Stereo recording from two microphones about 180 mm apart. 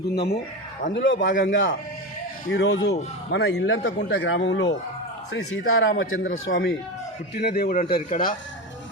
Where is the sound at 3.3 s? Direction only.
80° left.